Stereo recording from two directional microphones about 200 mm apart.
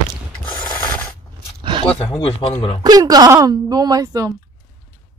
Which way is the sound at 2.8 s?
20° right (ahead or behind).